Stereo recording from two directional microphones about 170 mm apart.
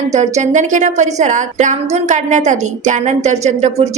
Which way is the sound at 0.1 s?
45° right (ahead or behind).